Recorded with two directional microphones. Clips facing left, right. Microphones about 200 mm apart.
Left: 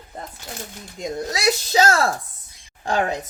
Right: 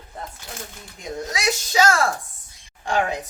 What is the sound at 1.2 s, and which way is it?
Speech, 35° left (ahead or behind).